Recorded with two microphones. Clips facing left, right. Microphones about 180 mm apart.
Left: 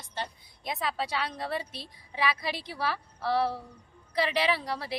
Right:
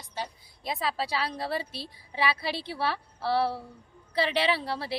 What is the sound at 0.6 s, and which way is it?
A woman's voice, 30° right (ahead or behind).